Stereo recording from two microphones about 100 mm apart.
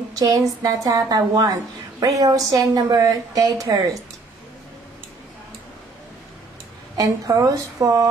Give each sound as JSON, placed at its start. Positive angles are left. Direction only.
{"t": 0.1, "sound": "a sound", "side_deg": -40}
{"t": 0.6, "sound": "a woman's voice", "side_deg": -40}
{"t": 7.0, "sound": "a woman's voice", "side_deg": -35}